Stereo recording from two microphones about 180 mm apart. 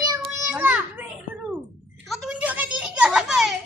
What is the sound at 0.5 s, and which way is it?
Children playing, 10° right (ahead or behind).